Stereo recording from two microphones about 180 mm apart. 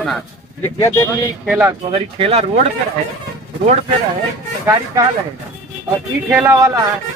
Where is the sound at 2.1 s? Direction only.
30° right (ahead or behind).